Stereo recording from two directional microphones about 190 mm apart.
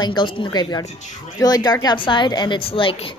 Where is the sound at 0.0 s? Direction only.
25° left (ahead or behind).